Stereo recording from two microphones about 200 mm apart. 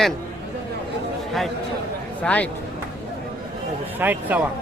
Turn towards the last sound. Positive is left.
turn(degrees=-10)  # may be behind; listen again after turning